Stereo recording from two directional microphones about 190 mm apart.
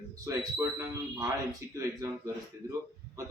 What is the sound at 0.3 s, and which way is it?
Speech, 15° right (ahead or behind).